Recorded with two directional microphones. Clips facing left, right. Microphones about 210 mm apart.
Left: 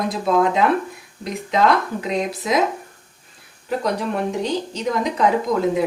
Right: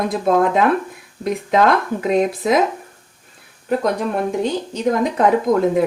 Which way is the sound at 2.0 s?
55° right (ahead or behind).